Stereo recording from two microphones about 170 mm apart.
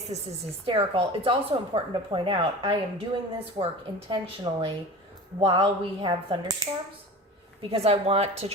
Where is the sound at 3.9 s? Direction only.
30° right (ahead or behind).